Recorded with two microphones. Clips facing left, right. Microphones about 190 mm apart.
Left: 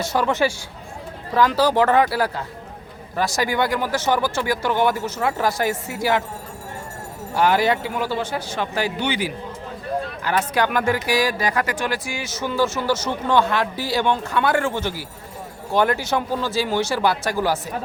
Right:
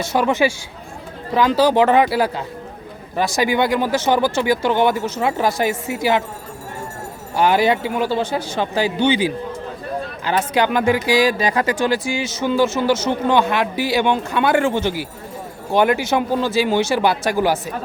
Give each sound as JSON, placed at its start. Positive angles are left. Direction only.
{"t": 0.0, "sound": "speech", "side_deg": -25}
{"t": 1.3, "sound": "speech", "side_deg": -20}
{"t": 7.3, "sound": "speech", "side_deg": -20}